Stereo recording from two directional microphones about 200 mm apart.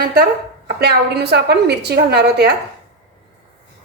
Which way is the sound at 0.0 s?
50° right (ahead or behind).